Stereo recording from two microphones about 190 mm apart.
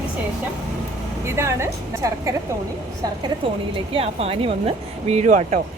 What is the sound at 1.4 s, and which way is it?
Speech, 15° right (ahead or behind).